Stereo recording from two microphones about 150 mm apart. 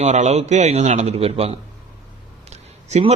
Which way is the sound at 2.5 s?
45° right (ahead or behind).